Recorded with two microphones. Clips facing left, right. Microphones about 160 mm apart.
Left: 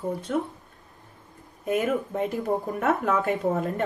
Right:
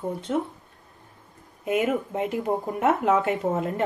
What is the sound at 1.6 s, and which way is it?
Speech, 20° right (ahead or behind).